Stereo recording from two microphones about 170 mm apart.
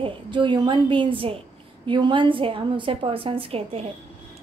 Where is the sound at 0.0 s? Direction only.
30° right (ahead or behind).